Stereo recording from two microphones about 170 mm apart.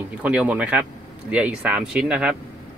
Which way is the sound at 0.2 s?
5° right (ahead or behind).